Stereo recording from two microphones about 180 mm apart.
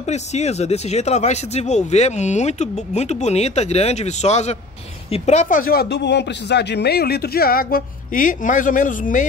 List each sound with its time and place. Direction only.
0.0 s speech: 35° left (ahead or behind)